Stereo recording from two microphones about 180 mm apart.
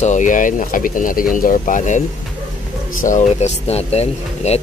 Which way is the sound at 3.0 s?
40° left (ahead or behind).